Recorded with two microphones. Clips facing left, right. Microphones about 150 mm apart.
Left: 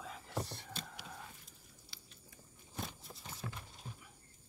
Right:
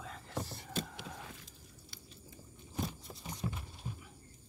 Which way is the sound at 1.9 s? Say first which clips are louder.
Right 4 dB; 50° right (ahead or behind).